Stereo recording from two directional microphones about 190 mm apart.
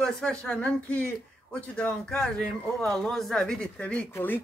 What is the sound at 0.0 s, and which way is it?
Speech, 5° left (ahead or behind).